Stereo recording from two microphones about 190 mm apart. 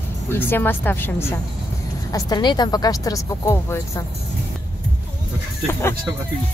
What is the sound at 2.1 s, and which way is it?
A woman's voice, 20° left (ahead or behind).